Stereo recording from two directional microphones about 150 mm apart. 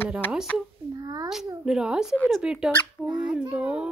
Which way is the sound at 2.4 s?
5° right (ahead or behind).